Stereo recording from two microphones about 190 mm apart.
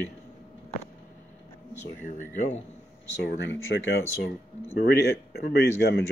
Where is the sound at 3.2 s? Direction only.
75° left (ahead or behind).